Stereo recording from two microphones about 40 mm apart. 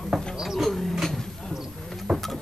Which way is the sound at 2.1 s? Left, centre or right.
Centre.